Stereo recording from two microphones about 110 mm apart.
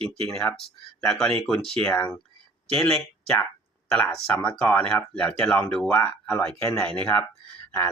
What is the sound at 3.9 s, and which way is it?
Speech, 5° left (ahead or behind).